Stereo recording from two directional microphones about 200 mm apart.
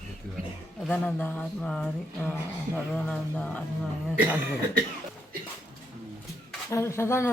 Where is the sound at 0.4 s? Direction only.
45° right (ahead or behind).